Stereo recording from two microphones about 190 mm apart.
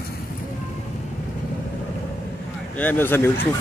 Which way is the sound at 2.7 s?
10° left (ahead or behind).